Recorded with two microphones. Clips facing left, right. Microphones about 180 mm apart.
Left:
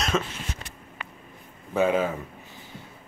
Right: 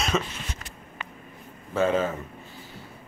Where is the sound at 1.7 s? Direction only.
10° left (ahead or behind).